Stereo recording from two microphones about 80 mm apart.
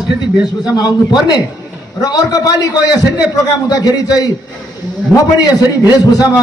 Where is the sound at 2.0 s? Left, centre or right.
Left.